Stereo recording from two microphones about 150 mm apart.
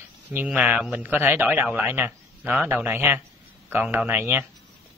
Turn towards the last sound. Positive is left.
turn(degrees=-15)  # may be behind; listen again after turning